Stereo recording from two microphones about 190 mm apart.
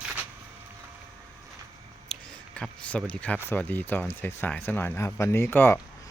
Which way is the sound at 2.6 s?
5° left (ahead or behind).